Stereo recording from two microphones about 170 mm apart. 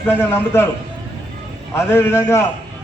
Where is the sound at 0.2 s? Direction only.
15° left (ahead or behind).